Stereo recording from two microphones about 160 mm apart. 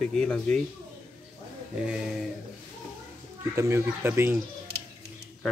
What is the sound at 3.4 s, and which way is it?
Speech, 15° right (ahead or behind).